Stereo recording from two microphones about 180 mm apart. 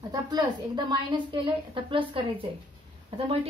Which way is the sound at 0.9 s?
25° right (ahead or behind).